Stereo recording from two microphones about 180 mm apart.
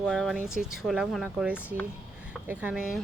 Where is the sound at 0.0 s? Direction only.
Centre (ahead or behind).